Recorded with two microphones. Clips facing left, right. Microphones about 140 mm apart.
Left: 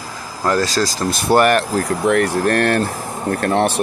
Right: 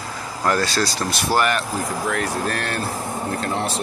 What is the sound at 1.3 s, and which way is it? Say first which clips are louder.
Speech: left 7 dB; 65° left (ahead or behind).